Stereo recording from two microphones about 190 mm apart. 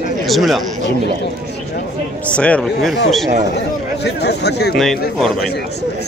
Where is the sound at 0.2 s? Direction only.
Centre (ahead or behind).